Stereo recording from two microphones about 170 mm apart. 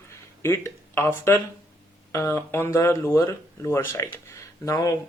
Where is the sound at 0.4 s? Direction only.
15° left (ahead or behind).